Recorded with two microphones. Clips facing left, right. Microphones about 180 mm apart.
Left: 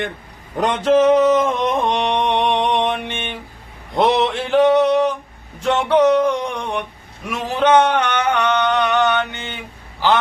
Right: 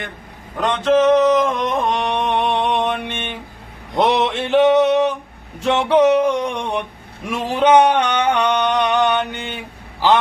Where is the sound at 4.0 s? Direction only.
Centre (ahead or behind).